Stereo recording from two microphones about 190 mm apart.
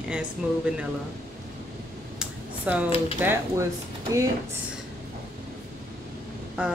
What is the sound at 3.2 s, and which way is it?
Speech, 10° right (ahead or behind).